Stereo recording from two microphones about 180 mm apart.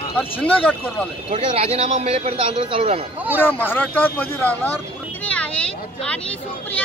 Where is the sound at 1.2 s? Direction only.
35° right (ahead or behind).